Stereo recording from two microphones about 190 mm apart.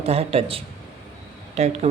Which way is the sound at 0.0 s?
30° right (ahead or behind).